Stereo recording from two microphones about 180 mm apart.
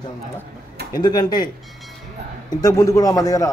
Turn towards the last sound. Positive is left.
turn(degrees=20)  # may be behind; listen again after turning